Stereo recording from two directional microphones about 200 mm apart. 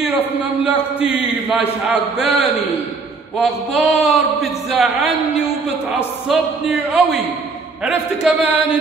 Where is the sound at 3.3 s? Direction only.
Centre (ahead or behind).